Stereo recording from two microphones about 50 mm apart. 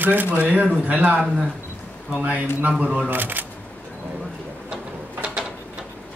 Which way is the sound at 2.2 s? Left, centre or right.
Right.